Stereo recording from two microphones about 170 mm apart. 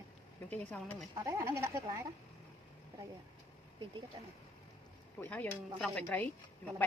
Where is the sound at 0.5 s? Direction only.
10° left (ahead or behind).